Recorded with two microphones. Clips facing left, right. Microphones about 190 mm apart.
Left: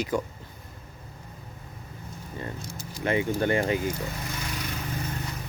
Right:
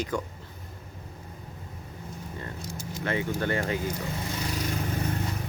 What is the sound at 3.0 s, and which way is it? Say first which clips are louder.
Speech: left 4 dB; 15° left (ahead or behind).